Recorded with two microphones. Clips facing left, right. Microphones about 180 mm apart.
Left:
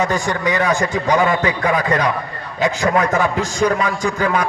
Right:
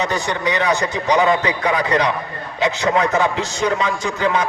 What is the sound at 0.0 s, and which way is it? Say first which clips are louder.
A man's voice: left 2 dB; 20° right (ahead or behind).